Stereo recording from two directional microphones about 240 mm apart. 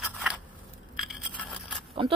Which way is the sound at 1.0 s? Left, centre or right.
Centre.